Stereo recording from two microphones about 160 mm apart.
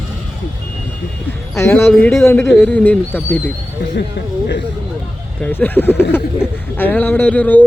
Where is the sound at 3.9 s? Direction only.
85° left.